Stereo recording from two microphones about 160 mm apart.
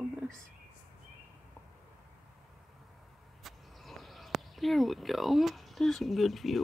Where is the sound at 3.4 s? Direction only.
Centre (ahead or behind).